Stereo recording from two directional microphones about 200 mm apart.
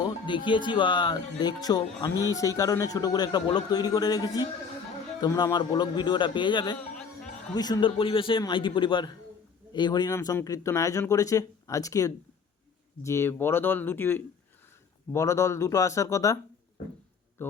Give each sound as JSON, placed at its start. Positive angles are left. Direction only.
{"t": 0.0, "sound": "a man's voice", "side_deg": 25}